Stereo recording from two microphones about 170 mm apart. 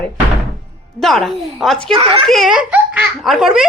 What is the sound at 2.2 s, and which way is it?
A woman's voice, centre (ahead or behind).